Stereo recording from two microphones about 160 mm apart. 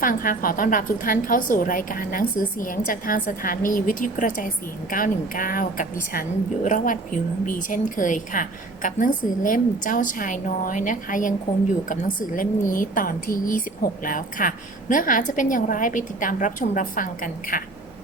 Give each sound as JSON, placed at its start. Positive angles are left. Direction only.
{"t": 0.0, "sound": "a woman's voice", "side_deg": 60}